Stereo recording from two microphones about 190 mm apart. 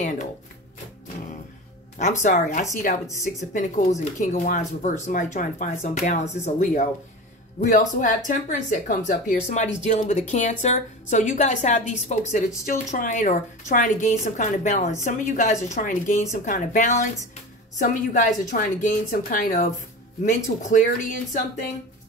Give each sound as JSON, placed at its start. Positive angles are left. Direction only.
{"t": 0.0, "sound": "speech", "side_deg": 40}
{"t": 2.2, "sound": "a woman's voice", "side_deg": 40}